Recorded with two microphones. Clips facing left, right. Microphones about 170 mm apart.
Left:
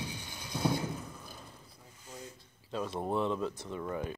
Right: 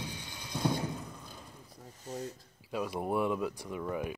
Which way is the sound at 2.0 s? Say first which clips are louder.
Right 8 dB; 40° right (ahead or behind).